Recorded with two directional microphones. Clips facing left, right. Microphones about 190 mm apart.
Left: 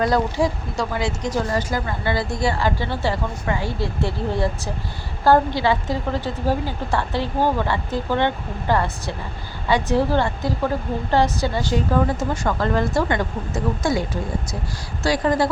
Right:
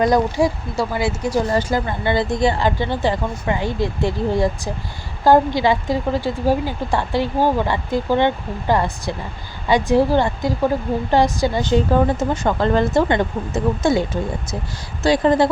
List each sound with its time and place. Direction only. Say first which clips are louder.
0.0 s a woman's voice: right 3 dB; 15° right (ahead or behind)
1.5 s a woman's voice: right 4 dB; 25° right (ahead or behind)